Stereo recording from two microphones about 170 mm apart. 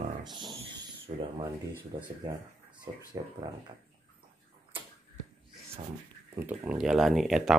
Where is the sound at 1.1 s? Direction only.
40° right (ahead or behind).